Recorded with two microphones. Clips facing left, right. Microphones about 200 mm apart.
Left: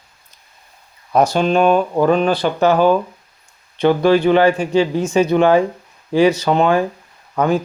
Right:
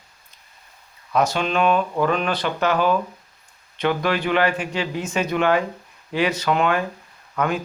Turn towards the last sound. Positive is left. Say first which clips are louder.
# left 7 dB
turn(degrees=35)  # may be behind; listen again after turning